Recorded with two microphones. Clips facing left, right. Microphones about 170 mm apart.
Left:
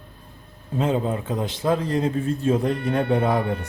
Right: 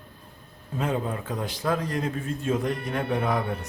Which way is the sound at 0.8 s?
25° left (ahead or behind).